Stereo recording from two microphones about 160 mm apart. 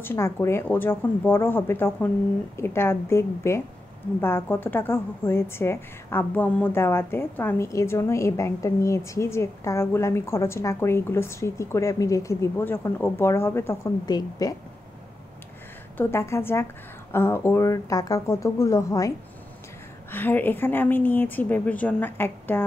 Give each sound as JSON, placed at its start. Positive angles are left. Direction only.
{"t": 0.0, "sound": "a woman's voice", "side_deg": 15}
{"t": 16.0, "sound": "a woman's voice", "side_deg": 15}